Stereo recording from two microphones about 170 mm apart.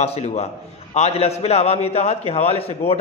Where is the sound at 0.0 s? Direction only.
40° left (ahead or behind).